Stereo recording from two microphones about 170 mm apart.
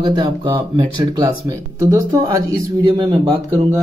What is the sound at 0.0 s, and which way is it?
Speech, 25° right (ahead or behind).